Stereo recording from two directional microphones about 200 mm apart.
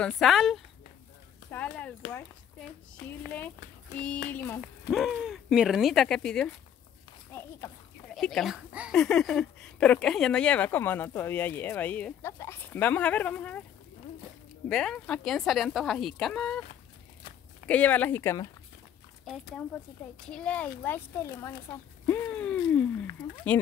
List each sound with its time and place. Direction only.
0.0 s speech: centre (ahead or behind)
1.5 s a sound: 5° left (ahead or behind)
3.3 s speech: 10° left (ahead or behind)
8.1 s speech: centre (ahead or behind)
14.7 s speech: 5° left (ahead or behind)
17.6 s speech: 5° left (ahead or behind)
20.2 s speech: 5° left (ahead or behind)